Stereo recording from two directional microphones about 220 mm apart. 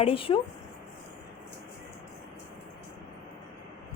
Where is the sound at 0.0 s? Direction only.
25° left (ahead or behind).